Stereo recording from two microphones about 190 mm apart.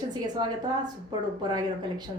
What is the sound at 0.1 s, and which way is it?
A woman's voice, 20° right (ahead or behind).